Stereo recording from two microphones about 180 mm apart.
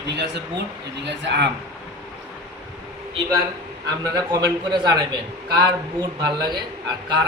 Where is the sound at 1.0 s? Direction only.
75° right (ahead or behind).